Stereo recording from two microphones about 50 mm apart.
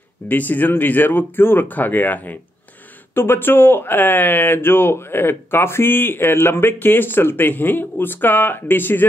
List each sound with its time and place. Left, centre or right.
0.3 s speech: left